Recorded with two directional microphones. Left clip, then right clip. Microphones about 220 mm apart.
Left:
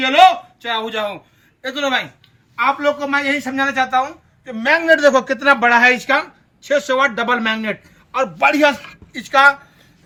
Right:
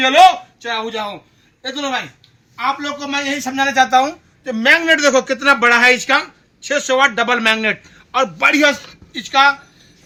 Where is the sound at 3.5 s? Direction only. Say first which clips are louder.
Right 6 dB; 15° right (ahead or behind).